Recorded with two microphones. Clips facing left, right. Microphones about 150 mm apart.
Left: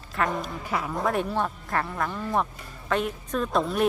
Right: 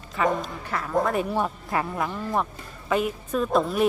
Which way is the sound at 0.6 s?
10° left (ahead or behind).